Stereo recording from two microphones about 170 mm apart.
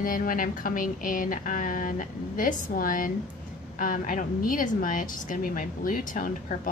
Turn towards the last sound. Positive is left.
turn(degrees=55)  # may be behind; listen again after turning